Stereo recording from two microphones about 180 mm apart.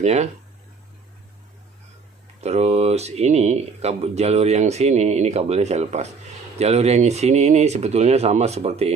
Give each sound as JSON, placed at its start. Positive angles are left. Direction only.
{"t": 0.0, "sound": "speech", "side_deg": -40}
{"t": 2.4, "sound": "speech", "side_deg": -35}